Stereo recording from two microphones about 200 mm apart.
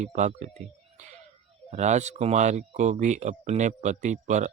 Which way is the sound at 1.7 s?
35° right (ahead or behind).